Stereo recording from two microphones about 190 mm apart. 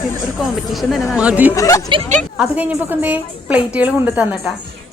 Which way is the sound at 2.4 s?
5° right (ahead or behind).